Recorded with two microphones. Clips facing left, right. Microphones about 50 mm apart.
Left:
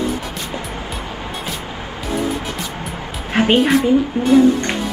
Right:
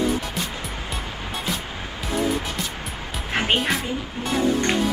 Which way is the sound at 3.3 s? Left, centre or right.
Centre.